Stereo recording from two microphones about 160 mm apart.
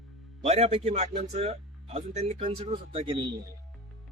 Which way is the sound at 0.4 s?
40° right (ahead or behind).